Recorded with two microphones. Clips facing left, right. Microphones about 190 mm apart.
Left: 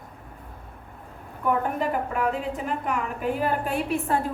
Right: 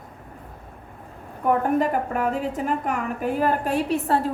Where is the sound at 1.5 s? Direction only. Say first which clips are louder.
Right 4 dB; 45° right (ahead or behind).